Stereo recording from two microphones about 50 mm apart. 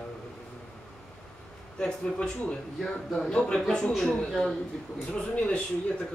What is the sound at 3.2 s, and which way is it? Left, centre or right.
A man's voice, centre.